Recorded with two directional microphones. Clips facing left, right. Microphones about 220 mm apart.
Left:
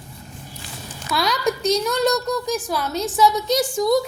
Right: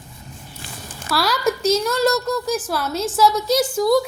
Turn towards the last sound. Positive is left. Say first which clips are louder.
# right 2 dB
turn(degrees=0)  # may be behind; listen again after turning